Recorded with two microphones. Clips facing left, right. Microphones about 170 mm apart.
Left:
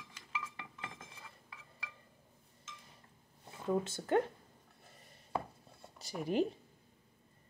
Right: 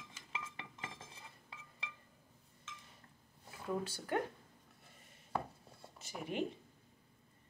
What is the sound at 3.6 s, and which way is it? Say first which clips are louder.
Speech: left 5 dB; 25° left (ahead or behind).